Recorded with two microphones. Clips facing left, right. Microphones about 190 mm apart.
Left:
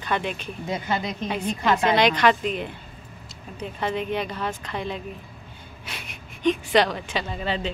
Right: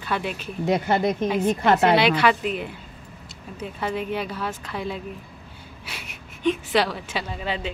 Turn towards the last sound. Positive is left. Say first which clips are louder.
# left 1 dB
turn(degrees=-10)  # may be behind; listen again after turning